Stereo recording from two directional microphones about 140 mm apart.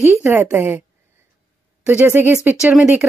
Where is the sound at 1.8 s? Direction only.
15° right (ahead or behind).